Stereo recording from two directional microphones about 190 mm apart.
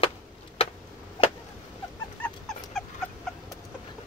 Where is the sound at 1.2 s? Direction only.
25° left (ahead or behind).